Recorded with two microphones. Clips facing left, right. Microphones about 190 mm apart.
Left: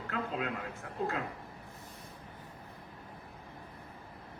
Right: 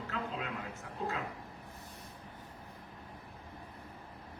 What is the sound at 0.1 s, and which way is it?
A man's voice, 55° left (ahead or behind).